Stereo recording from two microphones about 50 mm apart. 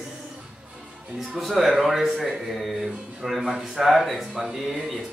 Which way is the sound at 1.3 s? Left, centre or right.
Centre.